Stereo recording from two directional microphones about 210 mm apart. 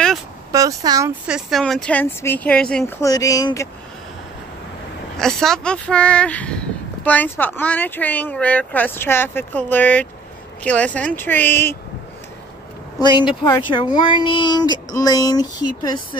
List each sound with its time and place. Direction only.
0.5 s speech: 15° right (ahead or behind)
1.2 s speech: centre (ahead or behind); by 3.6 s 15° left (ahead or behind)
5.1 s speech: centre (ahead or behind)
13.0 s speech: 20° left (ahead or behind)